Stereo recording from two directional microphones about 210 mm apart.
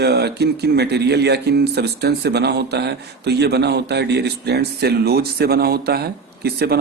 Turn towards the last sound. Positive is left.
turn(degrees=-50)  # may be behind; listen again after turning